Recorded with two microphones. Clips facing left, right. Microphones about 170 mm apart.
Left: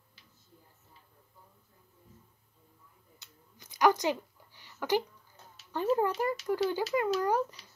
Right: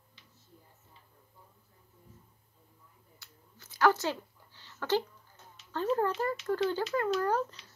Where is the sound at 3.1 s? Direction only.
20° left (ahead or behind).